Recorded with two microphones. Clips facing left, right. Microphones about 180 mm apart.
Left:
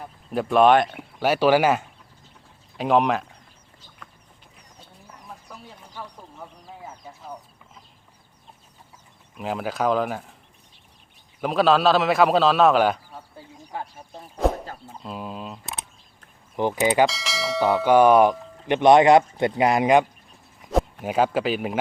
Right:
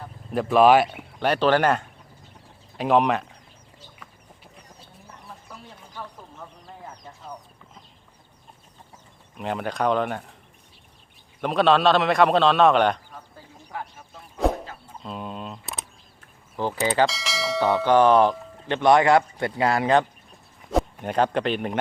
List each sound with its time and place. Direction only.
0.3 s a man's voice: centre (ahead or behind)
5.9 s a sound: 10° left (ahead or behind)
9.4 s a man's voice: centre (ahead or behind)
11.3 s a man's voice: centre (ahead or behind)
13.7 s speech: 30° left (ahead or behind)
14.4 s a sound: centre (ahead or behind)
15.0 s speech: centre (ahead or behind)
16.6 s bell: 15° left (ahead or behind)
17.1 s bell: centre (ahead or behind); by 20.1 s 15° left (ahead or behind)
20.7 s speech: 5° left (ahead or behind)